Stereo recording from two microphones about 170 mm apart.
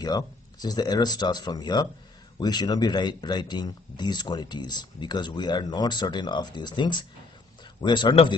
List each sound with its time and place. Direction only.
0.0 s speech: 25° left (ahead or behind)